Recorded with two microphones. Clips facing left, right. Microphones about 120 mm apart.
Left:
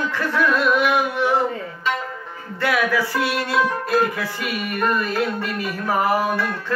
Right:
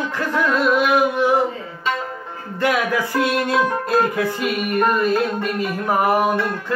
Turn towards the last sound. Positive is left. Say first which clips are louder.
# right 3 dB
turn(degrees=-20)  # may be behind; listen again after turning